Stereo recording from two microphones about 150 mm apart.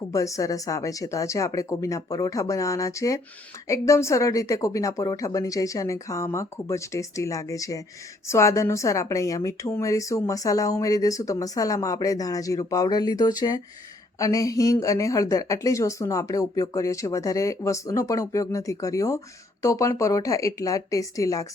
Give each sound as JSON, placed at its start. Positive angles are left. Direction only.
{"t": 0.1, "sound": "a woman's voice", "side_deg": 20}